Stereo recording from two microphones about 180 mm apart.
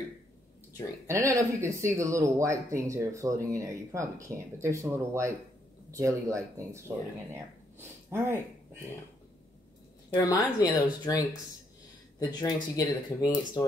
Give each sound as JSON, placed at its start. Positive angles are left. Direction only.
{"t": 1.0, "sound": "speech", "side_deg": -15}
{"t": 8.1, "sound": "speech", "side_deg": -15}
{"t": 10.1, "sound": "speech", "side_deg": 20}